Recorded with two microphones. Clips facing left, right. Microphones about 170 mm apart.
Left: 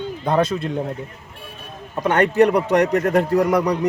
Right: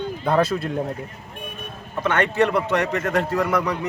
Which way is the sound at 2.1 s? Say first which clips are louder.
Left 5 dB; 40° left (ahead or behind).